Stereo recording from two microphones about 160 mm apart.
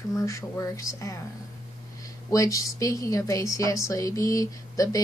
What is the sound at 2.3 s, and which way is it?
Speech, 20° left (ahead or behind).